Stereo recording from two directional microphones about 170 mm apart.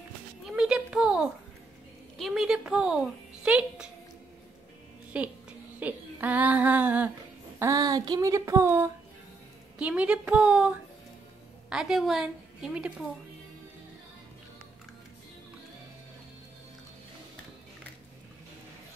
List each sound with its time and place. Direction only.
0.5 s a sound: 5° right (ahead or behind)
2.1 s a woman's voice: centre (ahead or behind)
5.1 s a woman's voice: 10° right (ahead or behind)